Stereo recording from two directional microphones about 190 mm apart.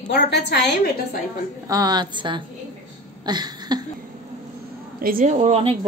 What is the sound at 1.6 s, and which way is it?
Speech, 20° right (ahead or behind).